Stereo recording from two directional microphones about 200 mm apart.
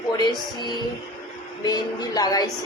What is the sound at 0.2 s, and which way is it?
A woman's voice, 20° left (ahead or behind).